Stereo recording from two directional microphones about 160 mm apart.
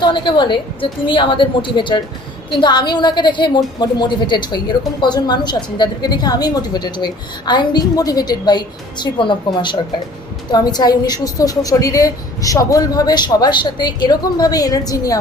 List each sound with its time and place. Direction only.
0.0 s a woman's voice: 30° left (ahead or behind)